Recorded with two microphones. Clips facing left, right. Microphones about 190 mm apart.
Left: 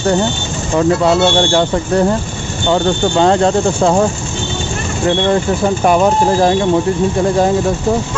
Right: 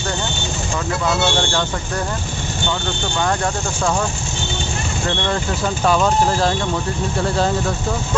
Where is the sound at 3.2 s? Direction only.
25° left (ahead or behind).